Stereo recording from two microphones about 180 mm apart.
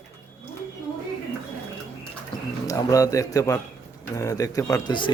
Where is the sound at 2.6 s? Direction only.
20° left (ahead or behind).